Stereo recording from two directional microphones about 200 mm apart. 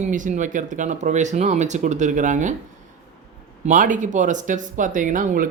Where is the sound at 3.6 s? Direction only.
40° right (ahead or behind).